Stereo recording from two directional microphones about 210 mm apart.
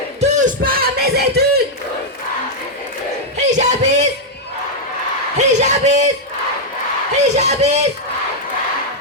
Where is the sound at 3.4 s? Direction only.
35° right (ahead or behind).